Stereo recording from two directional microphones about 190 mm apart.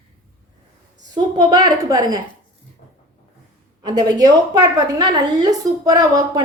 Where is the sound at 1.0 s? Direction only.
20° right (ahead or behind).